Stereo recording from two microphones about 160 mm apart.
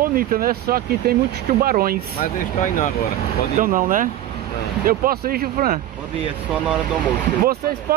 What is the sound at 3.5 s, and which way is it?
Speech, 55° right (ahead or behind).